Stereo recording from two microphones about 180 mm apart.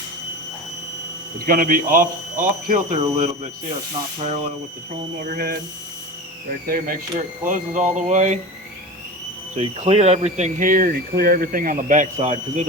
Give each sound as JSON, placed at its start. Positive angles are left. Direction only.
{"t": 1.5, "sound": "speech", "side_deg": -50}
{"t": 5.3, "sound": "speech", "side_deg": -55}
{"t": 6.7, "sound": "speech", "side_deg": -50}
{"t": 9.6, "sound": "speech", "side_deg": -35}